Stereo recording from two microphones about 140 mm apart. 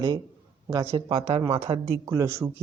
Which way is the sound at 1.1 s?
45° right (ahead or behind).